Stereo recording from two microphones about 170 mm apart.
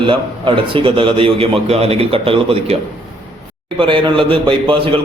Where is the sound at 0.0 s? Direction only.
30° right (ahead or behind).